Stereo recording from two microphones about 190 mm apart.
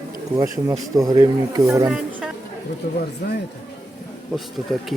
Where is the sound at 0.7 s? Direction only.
20° right (ahead or behind).